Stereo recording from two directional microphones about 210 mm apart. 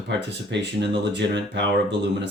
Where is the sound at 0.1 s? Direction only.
55° right (ahead or behind).